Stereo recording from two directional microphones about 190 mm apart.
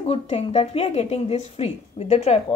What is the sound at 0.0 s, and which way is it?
A woman's voice, 30° left (ahead or behind).